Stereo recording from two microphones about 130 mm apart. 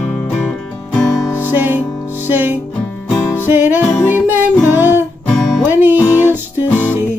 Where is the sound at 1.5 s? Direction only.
15° right (ahead or behind).